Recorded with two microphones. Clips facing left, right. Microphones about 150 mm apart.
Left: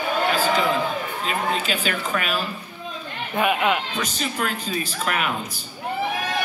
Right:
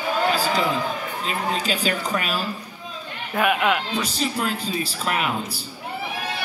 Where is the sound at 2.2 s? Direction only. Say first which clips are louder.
Left 1 dB; 35° right (ahead or behind).